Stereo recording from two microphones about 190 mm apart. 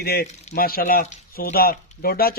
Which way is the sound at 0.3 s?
35° left (ahead or behind).